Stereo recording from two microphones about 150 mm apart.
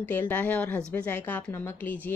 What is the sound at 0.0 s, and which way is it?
Speech, 10° left (ahead or behind).